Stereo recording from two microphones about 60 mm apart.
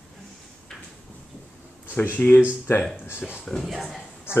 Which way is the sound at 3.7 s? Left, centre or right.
Centre.